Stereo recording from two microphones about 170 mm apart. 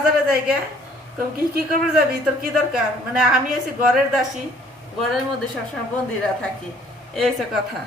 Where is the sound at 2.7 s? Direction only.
5° right (ahead or behind).